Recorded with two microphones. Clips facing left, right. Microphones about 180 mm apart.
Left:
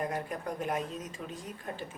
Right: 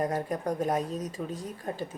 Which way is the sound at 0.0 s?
40° right (ahead or behind).